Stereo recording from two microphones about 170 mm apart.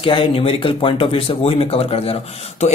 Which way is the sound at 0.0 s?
30° left (ahead or behind).